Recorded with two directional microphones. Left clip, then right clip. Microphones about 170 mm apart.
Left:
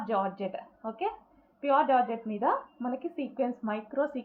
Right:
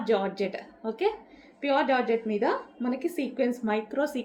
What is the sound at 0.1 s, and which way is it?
A woman's voice, 30° right (ahead or behind).